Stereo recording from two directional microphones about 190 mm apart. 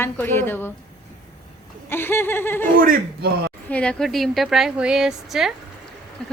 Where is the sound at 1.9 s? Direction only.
10° left (ahead or behind).